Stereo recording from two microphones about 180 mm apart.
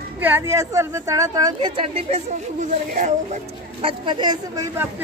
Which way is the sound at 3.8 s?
25° right (ahead or behind).